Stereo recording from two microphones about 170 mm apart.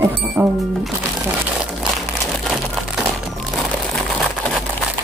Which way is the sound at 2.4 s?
Centre (ahead or behind).